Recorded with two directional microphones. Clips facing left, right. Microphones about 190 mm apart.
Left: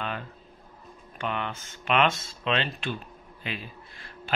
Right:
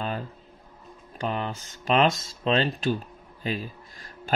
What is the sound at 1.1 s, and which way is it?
Speech, 35° right (ahead or behind).